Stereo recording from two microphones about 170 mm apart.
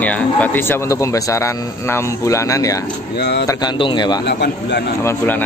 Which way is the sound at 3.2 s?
80° left.